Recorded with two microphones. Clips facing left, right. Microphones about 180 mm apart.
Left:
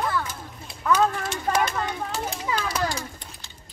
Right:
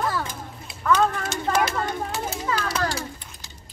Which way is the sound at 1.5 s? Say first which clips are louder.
Right 2 dB; 5° right (ahead or behind).